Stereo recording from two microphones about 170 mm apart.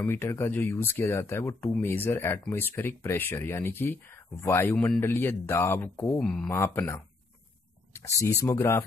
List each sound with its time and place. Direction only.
0.0 s speech: 15° left (ahead or behind)
8.2 s speech: 15° left (ahead or behind)